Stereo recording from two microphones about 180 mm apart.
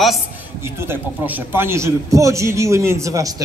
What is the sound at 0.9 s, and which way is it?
A man's voice, 10° right (ahead or behind).